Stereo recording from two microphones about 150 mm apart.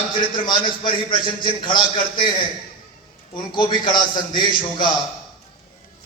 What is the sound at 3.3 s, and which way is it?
A man's voice, 30° left (ahead or behind).